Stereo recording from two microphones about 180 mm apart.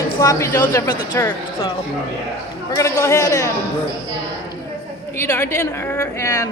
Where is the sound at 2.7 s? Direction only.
15° left (ahead or behind).